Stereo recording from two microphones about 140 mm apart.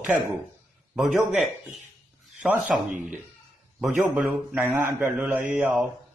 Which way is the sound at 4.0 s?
10° right (ahead or behind).